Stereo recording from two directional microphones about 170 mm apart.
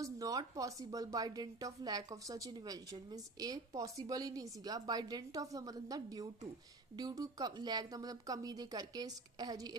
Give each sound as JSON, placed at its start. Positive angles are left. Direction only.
{"t": 0.0, "sound": "a woman's voice", "side_deg": -20}